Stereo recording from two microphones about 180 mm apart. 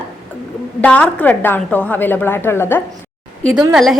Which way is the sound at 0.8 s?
10° left (ahead or behind).